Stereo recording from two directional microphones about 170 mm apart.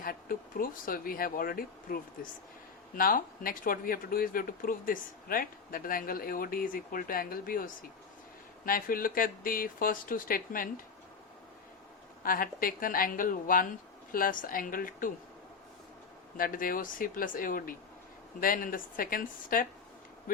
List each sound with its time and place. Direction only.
0.0 s speech: 55° left (ahead or behind)
12.2 s speech: 55° left (ahead or behind)
16.4 s speech: 55° left (ahead or behind)